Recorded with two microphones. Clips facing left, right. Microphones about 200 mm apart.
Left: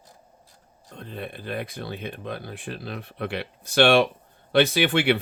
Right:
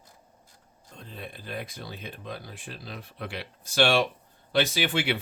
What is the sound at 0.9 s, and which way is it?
Speech, 60° left (ahead or behind).